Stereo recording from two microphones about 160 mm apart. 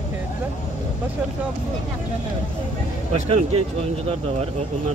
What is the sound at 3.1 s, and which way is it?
Speech, 40° right (ahead or behind).